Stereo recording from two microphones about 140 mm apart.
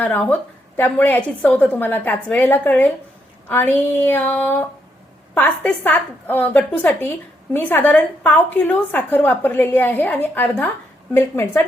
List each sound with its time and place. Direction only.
0.0 s a woman's voice: 10° left (ahead or behind)